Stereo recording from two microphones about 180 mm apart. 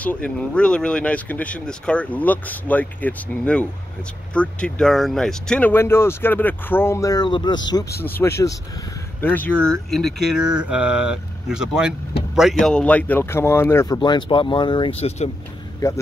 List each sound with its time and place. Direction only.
0.0 s speech: 10° left (ahead or behind); by 7.8 s 25° left (ahead or behind)
8.0 s speech: 10° left (ahead or behind); by 11.9 s 5° right (ahead or behind)
12.6 s speech: 5° left (ahead or behind); by 15.2 s 35° left (ahead or behind)